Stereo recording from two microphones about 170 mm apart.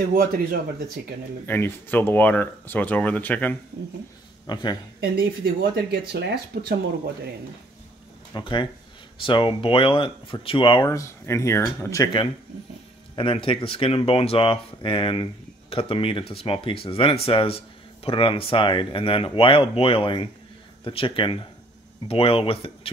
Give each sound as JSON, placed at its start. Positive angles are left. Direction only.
{"t": 0.1, "sound": "speech", "side_deg": -60}
{"t": 1.4, "sound": "speech", "side_deg": 10}
{"t": 4.5, "sound": "speech", "side_deg": 25}
{"t": 5.0, "sound": "speech", "side_deg": -70}
{"t": 8.3, "sound": "speech", "side_deg": 25}
{"t": 13.1, "sound": "speech", "side_deg": 30}